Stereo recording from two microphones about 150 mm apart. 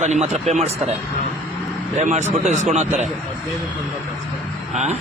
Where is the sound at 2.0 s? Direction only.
50° right (ahead or behind).